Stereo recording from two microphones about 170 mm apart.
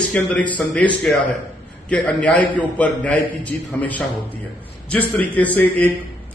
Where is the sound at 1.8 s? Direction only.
5° left (ahead or behind).